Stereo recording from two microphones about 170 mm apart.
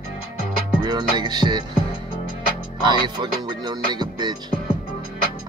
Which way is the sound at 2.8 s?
25° right (ahead or behind).